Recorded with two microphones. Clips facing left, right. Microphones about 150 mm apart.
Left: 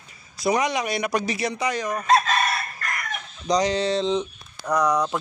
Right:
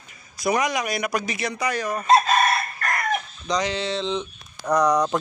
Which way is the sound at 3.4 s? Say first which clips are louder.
Left 5 dB; 40° left (ahead or behind).